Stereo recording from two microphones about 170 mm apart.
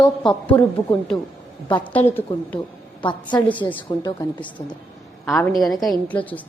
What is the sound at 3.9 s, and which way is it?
Speech, 20° left (ahead or behind).